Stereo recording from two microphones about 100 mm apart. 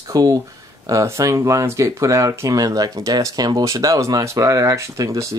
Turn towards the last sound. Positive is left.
turn(degrees=-30)  # may be behind; listen again after turning